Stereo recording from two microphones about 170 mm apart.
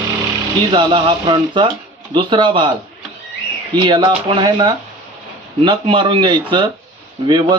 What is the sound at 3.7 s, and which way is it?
Speech, 30° right (ahead or behind).